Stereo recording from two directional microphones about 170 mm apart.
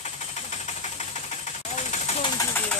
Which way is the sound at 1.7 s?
45° left (ahead or behind).